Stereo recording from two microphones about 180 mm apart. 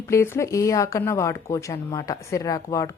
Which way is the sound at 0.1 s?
15° left (ahead or behind).